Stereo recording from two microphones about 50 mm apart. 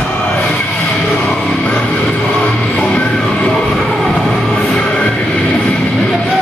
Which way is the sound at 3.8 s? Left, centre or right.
Centre.